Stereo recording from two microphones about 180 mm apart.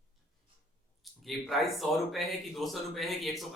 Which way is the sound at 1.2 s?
Centre (ahead or behind).